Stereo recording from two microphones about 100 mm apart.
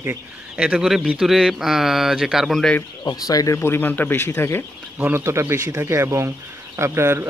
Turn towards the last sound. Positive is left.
turn(degrees=-25)  # may be behind; listen again after turning